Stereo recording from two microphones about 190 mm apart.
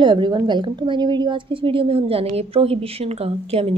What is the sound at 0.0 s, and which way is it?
A woman's voice, 25° right (ahead or behind).